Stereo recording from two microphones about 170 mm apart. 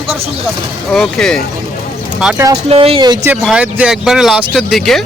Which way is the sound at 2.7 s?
35° right (ahead or behind).